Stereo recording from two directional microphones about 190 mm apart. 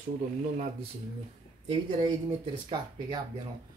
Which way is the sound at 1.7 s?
25° right (ahead or behind).